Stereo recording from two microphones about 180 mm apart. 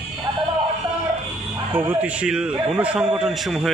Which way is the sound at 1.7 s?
10° right (ahead or behind).